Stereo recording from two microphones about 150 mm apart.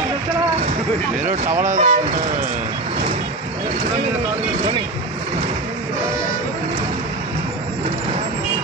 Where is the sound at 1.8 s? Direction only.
55° right (ahead or behind).